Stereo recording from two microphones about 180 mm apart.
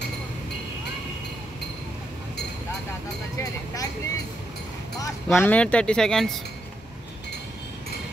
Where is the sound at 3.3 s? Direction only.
20° left (ahead or behind).